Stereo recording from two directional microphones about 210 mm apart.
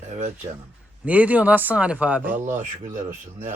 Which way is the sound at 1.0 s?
5° right (ahead or behind).